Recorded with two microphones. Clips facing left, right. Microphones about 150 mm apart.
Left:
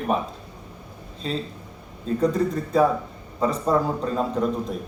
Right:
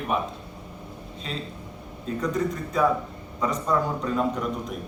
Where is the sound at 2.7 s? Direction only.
30° left (ahead or behind).